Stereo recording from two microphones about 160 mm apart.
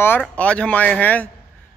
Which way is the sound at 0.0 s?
10° left (ahead or behind).